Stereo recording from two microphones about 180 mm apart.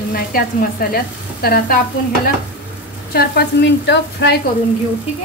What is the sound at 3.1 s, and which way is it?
Frying, 70° left (ahead or behind).